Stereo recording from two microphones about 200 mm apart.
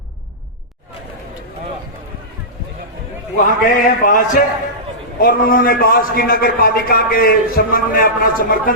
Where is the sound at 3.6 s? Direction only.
40° left (ahead or behind).